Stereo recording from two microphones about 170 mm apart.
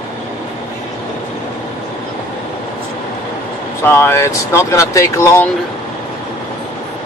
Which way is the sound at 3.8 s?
15° left (ahead or behind).